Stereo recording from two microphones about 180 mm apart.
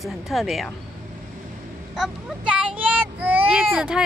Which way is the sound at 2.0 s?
5° right (ahead or behind).